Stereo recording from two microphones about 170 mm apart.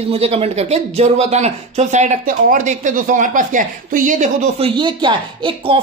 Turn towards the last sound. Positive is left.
turn(degrees=-30)  # may be behind; listen again after turning